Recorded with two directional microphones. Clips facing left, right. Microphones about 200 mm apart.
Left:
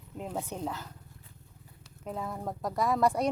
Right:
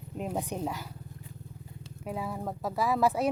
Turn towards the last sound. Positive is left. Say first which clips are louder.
# even
turn(degrees=-5)  # may be behind; listen again after turning